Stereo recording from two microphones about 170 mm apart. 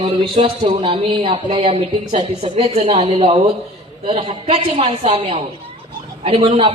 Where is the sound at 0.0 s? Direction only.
35° right (ahead or behind).